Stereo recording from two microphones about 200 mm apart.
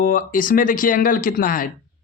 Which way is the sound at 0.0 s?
45° left (ahead or behind).